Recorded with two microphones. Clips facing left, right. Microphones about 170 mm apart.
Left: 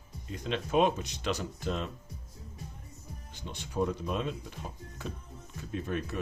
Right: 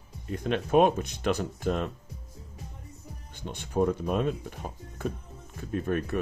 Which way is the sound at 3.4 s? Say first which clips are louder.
Right 5 dB; 55° right (ahead or behind).